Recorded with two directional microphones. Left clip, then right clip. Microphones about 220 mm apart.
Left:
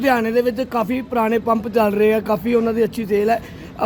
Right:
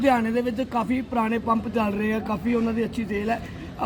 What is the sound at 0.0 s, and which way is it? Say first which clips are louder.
Speech: left 5 dB; 50° left (ahead or behind).